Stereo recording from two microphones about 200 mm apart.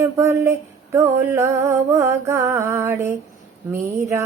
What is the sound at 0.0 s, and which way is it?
Speech, 15° right (ahead or behind).